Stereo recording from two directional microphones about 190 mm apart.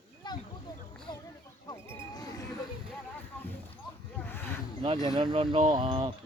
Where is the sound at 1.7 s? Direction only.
20° left (ahead or behind).